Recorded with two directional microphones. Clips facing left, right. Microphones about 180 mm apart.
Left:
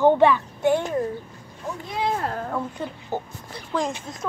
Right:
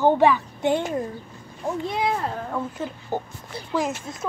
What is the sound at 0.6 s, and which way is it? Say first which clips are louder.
Speech: left 4 dB; 20° right (ahead or behind).